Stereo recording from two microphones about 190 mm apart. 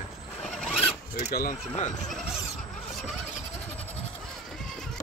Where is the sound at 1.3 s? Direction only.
50° left (ahead or behind).